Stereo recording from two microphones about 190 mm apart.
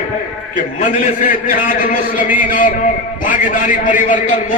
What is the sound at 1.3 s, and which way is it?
A man's voice, 45° left (ahead or behind).